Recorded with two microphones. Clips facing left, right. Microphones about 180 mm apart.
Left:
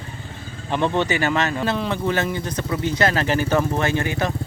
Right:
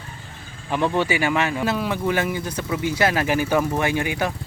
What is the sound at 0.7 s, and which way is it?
Speech, 5° right (ahead or behind).